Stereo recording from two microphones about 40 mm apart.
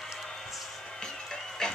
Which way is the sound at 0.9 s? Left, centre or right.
Centre.